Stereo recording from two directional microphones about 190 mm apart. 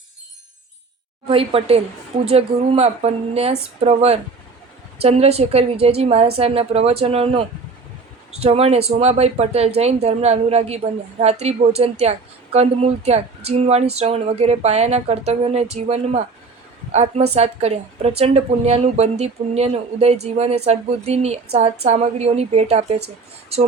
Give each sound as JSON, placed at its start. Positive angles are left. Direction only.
{"t": 1.3, "sound": "a woman's voice", "side_deg": -30}